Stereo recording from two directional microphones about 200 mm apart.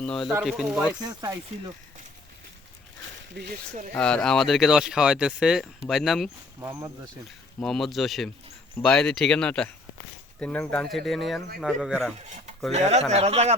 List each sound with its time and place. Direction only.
0.0 s speech: 5° left (ahead or behind)
1.0 s speech: 20° right (ahead or behind)
3.3 s speech: 55° right (ahead or behind)
3.9 s speech: 5° left (ahead or behind)
6.6 s speech: 15° right (ahead or behind)
7.6 s speech: centre (ahead or behind)
12.7 s a man's voice: 35° right (ahead or behind)